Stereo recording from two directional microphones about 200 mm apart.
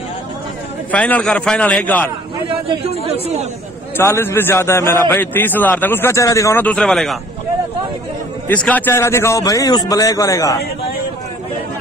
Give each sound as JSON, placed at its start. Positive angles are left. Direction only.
{"t": 0.9, "sound": "a man's voice", "side_deg": 5}
{"t": 2.4, "sound": "speech", "side_deg": -30}
{"t": 3.9, "sound": "a man's voice", "side_deg": 10}
{"t": 8.5, "sound": "a man's voice", "side_deg": 10}